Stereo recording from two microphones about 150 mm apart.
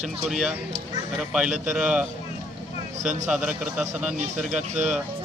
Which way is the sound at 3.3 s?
10° right (ahead or behind).